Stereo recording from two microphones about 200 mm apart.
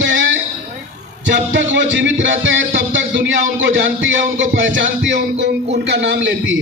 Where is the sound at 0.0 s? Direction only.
70° right (ahead or behind).